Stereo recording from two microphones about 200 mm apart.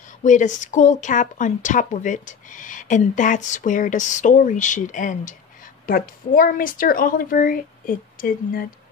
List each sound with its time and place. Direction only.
0.2 s a woman's voice: 40° left (ahead or behind)